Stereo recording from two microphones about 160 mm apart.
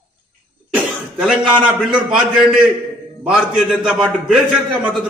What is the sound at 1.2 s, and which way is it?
A man's voice, 5° right (ahead or behind).